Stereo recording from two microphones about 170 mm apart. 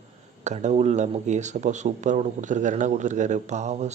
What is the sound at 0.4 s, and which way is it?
A man's voice, 40° right (ahead or behind).